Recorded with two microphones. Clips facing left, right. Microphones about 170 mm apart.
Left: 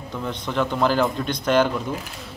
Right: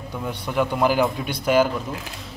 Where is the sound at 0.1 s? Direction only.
10° right (ahead or behind).